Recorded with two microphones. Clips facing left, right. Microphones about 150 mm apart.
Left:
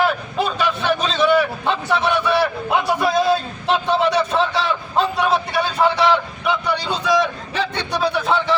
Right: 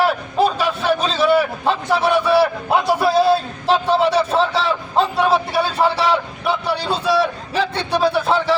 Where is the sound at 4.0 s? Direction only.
30° right (ahead or behind).